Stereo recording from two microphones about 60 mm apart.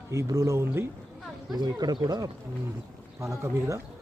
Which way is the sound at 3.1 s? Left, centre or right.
Right.